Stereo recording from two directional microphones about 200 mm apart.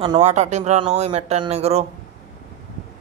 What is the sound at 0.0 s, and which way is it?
Speech, 30° right (ahead or behind).